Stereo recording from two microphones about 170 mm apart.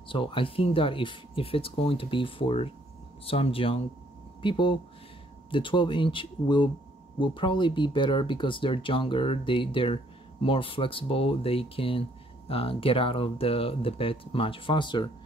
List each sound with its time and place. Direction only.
0.1 s speech: 30° left (ahead or behind)